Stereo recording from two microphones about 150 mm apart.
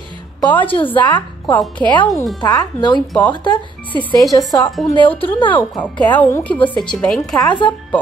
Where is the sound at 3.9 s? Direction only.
10° left (ahead or behind).